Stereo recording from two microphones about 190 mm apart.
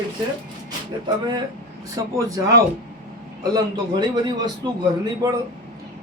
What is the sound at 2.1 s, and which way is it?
A man's voice, 20° right (ahead or behind).